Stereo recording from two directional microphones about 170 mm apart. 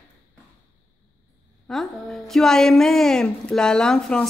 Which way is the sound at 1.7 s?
Centre (ahead or behind).